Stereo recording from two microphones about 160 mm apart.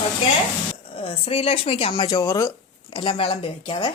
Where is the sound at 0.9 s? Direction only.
35° left (ahead or behind); by 2.5 s 20° left (ahead or behind).